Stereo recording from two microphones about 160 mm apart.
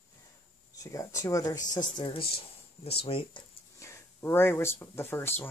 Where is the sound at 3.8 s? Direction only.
15° left (ahead or behind).